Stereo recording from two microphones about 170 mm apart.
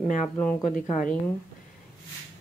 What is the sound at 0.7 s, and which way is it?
Speech, 50° left (ahead or behind).